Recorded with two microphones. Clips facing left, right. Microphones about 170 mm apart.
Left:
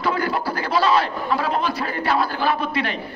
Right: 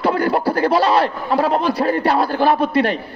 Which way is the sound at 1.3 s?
35° right (ahead or behind).